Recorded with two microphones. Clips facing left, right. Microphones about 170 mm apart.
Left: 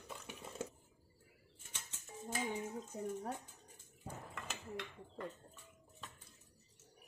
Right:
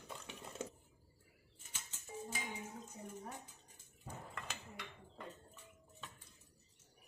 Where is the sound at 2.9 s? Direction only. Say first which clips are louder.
Left 12 dB; 65° left (ahead or behind).